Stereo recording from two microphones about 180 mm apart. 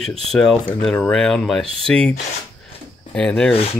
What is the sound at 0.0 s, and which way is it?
Speech, 5° left (ahead or behind).